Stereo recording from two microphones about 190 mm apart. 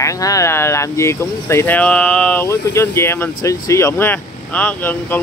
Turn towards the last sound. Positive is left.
turn(degrees=10)  # may be behind; listen again after turning